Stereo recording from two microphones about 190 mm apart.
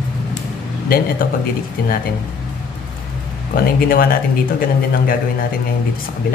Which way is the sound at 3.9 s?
50° left (ahead or behind).